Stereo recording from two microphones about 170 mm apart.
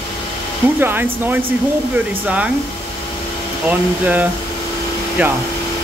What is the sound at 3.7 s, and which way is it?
Speech, 10° right (ahead or behind).